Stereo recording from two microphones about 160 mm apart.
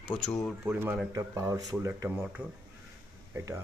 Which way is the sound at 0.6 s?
15° right (ahead or behind).